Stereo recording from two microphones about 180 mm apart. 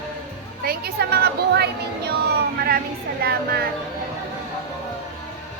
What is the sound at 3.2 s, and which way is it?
Speech, 60° right (ahead or behind).